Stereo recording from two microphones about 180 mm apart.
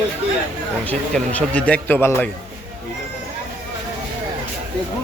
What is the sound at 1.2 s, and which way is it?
Speech, 5° left (ahead or behind).